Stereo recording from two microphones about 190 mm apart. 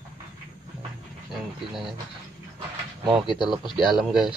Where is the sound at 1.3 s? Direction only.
Centre (ahead or behind).